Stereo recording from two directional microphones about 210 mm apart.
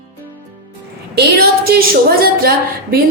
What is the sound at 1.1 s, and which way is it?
A woman's voice, 50° right (ahead or behind).